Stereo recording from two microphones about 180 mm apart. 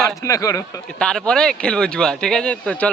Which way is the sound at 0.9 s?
5° left (ahead or behind).